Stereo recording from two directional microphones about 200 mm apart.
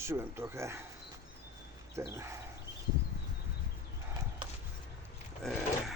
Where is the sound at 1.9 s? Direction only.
15° right (ahead or behind).